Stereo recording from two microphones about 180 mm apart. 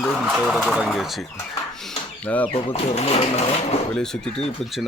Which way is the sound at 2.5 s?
35° left (ahead or behind).